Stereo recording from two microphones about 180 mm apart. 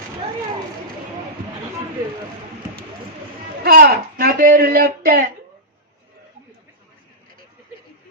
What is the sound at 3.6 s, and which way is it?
Speech, 60° right (ahead or behind).